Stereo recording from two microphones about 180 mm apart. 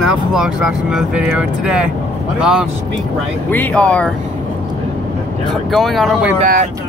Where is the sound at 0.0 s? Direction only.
5° right (ahead or behind).